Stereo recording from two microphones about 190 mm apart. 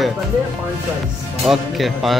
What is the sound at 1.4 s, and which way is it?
Speech, centre (ahead or behind).